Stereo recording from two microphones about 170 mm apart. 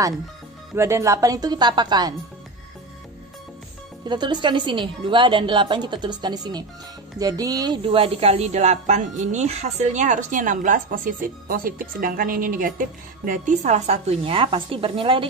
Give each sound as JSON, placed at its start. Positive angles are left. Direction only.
{"t": 0.7, "sound": "a woman's voice", "side_deg": -15}
{"t": 4.1, "sound": "a woman's voice", "side_deg": -25}